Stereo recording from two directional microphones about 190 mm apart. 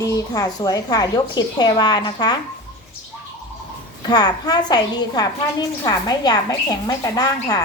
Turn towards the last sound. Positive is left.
turn(degrees=20)  # may be behind; listen again after turning